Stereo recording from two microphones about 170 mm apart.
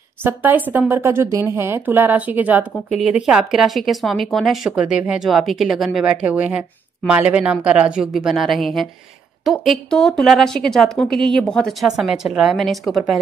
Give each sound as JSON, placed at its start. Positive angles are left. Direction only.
{"t": 0.2, "sound": "speech", "side_deg": -10}